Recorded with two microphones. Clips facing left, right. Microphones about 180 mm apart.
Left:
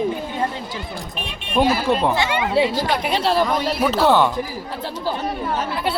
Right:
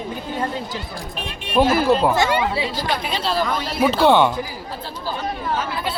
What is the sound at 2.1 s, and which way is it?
Speech, 40° right (ahead or behind).